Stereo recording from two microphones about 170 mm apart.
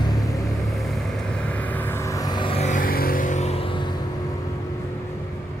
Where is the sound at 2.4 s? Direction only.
30° left (ahead or behind).